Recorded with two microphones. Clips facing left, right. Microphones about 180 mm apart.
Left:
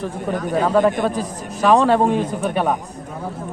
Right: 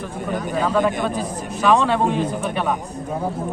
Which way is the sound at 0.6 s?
40° left (ahead or behind).